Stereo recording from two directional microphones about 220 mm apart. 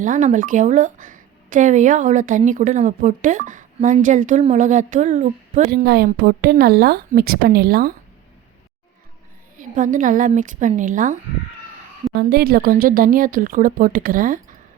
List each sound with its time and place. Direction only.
0.0 s a woman's voice: 35° right (ahead or behind)
5.7 s a woman's voice: 45° right (ahead or behind)
9.6 s a woman's voice: 35° right (ahead or behind)